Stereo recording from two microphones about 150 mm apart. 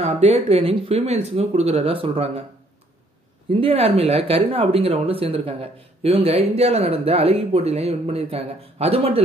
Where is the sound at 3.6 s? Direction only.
40° right (ahead or behind).